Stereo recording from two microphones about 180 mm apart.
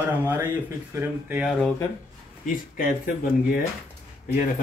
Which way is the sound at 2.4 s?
50° left (ahead or behind).